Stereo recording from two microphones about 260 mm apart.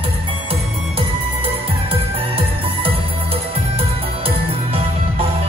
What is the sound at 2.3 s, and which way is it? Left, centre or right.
Music, right.